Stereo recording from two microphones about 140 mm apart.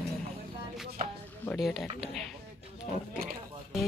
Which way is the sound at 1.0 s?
70° right (ahead or behind).